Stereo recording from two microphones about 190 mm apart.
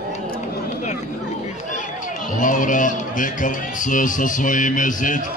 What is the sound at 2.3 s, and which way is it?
A man's voice, 45° left (ahead or behind).